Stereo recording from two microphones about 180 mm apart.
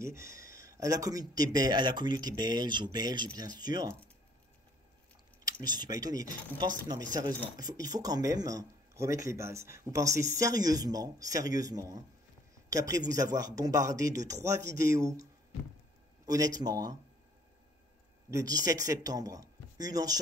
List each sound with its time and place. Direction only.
0.0 s speech: 15° right (ahead or behind)
5.4 s speech: 25° right (ahead or behind)
16.3 s speech: 20° right (ahead or behind)
18.3 s speech: 20° right (ahead or behind)